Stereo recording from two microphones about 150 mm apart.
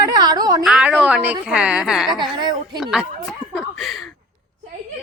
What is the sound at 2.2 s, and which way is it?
Speech, 30° right (ahead or behind).